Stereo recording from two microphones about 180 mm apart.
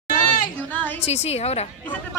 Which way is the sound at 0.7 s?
10° left (ahead or behind).